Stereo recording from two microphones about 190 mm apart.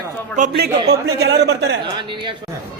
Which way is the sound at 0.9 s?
60° right (ahead or behind).